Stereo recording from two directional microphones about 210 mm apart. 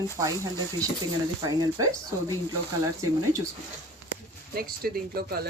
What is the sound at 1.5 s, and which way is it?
Speech, 20° right (ahead or behind).